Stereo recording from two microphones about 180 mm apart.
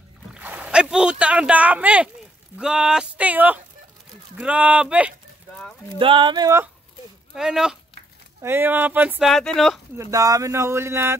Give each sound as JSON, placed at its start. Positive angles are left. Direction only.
{"t": 0.3, "sound": "speech", "side_deg": -10}
{"t": 5.9, "sound": "speech", "side_deg": -30}
{"t": 7.3, "sound": "speech", "side_deg": -5}
{"t": 9.9, "sound": "speech", "side_deg": -20}